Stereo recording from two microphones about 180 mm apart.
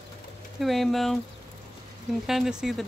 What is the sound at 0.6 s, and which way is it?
Speech, centre (ahead or behind).